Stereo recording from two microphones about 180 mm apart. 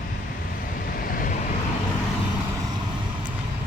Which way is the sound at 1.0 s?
50° left (ahead or behind).